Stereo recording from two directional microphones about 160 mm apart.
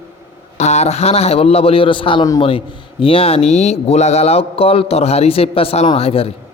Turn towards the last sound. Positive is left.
turn(degrees=40)  # may be behind; listen again after turning